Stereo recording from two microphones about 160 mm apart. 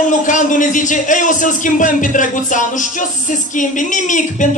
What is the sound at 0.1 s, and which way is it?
A man's voice, 50° left (ahead or behind).